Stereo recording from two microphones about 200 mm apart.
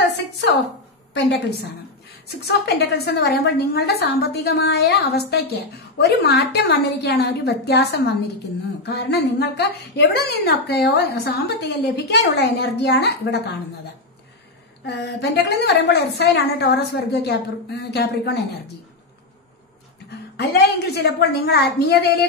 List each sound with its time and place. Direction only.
2.4 s a woman's voice: 55° left (ahead or behind)
14.9 s a woman's voice: 60° left (ahead or behind)
20.1 s a woman's voice: 55° left (ahead or behind)